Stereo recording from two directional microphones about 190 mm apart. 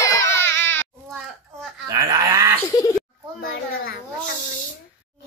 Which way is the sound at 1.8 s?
15° right (ahead or behind).